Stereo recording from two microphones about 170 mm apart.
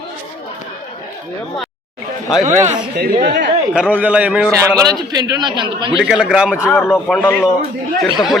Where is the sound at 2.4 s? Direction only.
45° right (ahead or behind).